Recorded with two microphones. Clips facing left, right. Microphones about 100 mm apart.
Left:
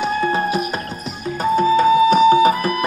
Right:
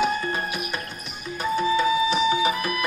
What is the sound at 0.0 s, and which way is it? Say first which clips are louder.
Music: left 6 dB; 30° left (ahead or behind).